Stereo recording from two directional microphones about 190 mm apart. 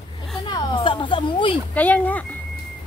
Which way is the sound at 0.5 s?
25° left (ahead or behind).